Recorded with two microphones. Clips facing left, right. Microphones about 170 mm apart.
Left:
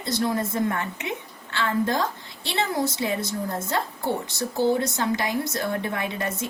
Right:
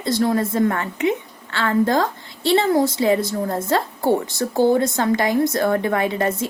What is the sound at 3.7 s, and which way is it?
A woman's voice, 60° right (ahead or behind).